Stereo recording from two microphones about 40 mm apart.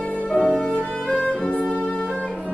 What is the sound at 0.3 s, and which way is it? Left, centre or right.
Music, left.